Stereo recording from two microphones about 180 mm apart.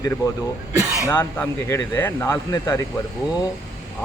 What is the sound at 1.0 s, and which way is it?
Speech, 15° left (ahead or behind).